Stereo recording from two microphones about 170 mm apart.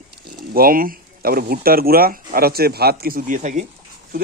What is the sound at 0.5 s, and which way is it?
Speech, 60° right (ahead or behind).